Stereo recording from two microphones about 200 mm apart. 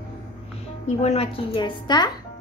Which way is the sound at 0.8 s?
30° left (ahead or behind).